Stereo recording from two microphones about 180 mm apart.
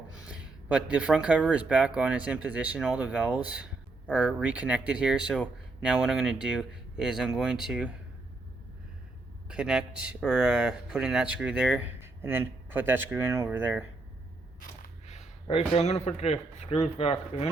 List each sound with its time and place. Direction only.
0.3 s speech: 5° right (ahead or behind)
9.5 s speech: 5° right (ahead or behind)
15.0 s speech: 35° left (ahead or behind)